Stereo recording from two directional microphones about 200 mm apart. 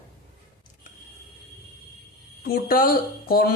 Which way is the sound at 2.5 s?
45° left (ahead or behind).